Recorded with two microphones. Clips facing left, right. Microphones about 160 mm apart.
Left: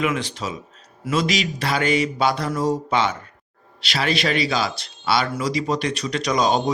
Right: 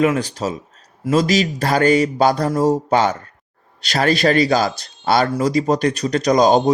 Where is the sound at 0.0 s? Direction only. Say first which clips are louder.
Right 6 dB; 40° right (ahead or behind).